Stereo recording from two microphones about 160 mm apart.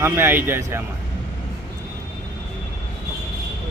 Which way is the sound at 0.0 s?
15° right (ahead or behind).